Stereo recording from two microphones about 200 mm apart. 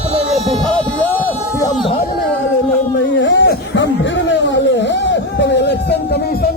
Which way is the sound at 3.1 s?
65° left (ahead or behind).